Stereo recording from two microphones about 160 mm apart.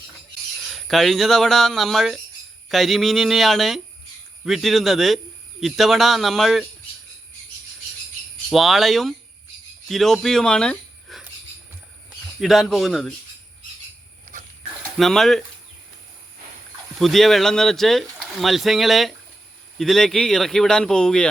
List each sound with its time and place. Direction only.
0.7 s speech: centre (ahead or behind)
8.4 s speech: centre (ahead or behind)
12.4 s speech: centre (ahead or behind)
14.3 s a sound: 60° right (ahead or behind)
14.9 s speech: centre (ahead or behind)
16.9 s speech: centre (ahead or behind)